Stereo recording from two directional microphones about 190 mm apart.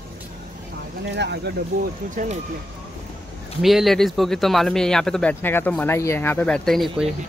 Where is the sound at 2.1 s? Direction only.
45° right (ahead or behind).